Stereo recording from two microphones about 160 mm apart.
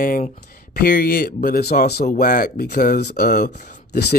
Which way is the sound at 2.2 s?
60° left (ahead or behind).